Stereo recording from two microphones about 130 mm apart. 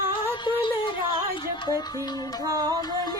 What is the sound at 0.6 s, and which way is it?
Music, 40° left (ahead or behind).